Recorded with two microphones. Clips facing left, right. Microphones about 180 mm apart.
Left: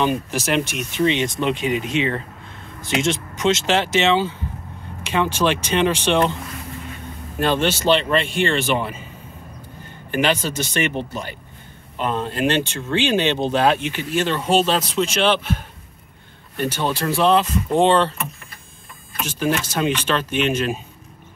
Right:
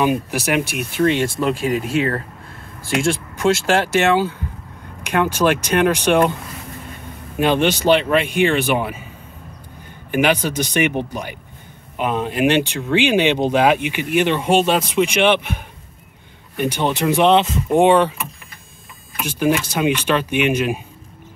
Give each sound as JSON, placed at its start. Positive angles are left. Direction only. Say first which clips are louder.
{"t": 0.0, "sound": "speech", "louder": "right 2 dB", "side_deg": -10}
{"t": 1.0, "sound": "speech", "louder": "right 2 dB", "side_deg": -50}
{"t": 1.4, "sound": "speech", "louder": "right 2 dB", "side_deg": -5}
{"t": 2.0, "sound": "speech", "louder": "right 3 dB", "side_deg": -45}
{"t": 5.0, "sound": "speech", "louder": "right 3 dB", "side_deg": -10}
{"t": 7.3, "sound": "speech", "louder": "right 3 dB", "side_deg": -15}
{"t": 10.1, "sound": "speech", "louder": "right 3 dB", "side_deg": -10}
{"t": 17.7, "sound": "speech", "louder": "right 3 dB", "side_deg": -15}